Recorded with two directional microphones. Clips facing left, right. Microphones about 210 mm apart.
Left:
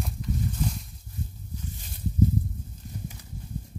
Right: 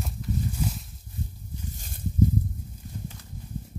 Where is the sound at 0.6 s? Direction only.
5° right (ahead or behind).